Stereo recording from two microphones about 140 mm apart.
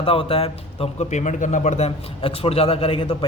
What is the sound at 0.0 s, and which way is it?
A man's voice, 40° left (ahead or behind).